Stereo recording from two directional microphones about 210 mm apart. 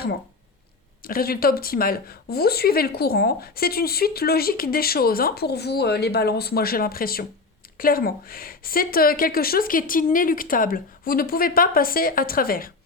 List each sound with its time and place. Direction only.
1.0 s speech: 45° left (ahead or behind)